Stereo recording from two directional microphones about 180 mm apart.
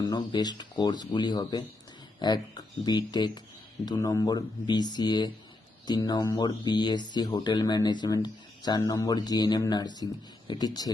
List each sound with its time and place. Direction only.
0.0 s speech: 25° left (ahead or behind)